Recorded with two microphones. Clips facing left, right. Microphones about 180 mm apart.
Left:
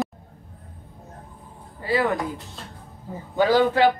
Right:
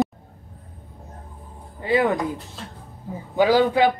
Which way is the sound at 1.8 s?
20° right (ahead or behind).